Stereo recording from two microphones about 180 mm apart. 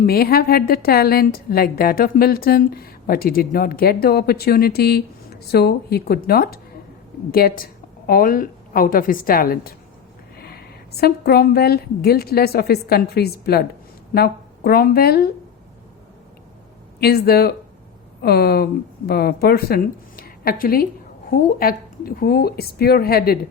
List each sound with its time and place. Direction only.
0.0 s a woman's voice: 60° left (ahead or behind)
11.0 s a woman's voice: 60° left (ahead or behind)
17.0 s a woman's voice: 60° left (ahead or behind)